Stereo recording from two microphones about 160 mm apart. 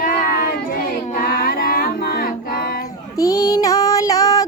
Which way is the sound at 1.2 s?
65° left (ahead or behind).